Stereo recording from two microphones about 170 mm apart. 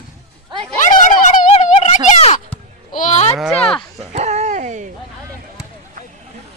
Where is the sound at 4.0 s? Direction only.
40° right (ahead or behind).